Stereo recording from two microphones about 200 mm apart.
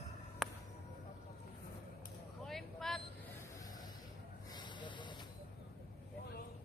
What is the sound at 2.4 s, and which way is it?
Vehicle, centre (ahead or behind).